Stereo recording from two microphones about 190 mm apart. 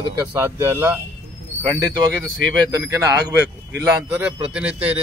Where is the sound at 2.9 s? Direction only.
15° right (ahead or behind).